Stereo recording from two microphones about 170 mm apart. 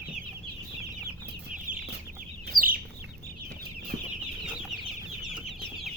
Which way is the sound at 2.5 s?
60° right (ahead or behind).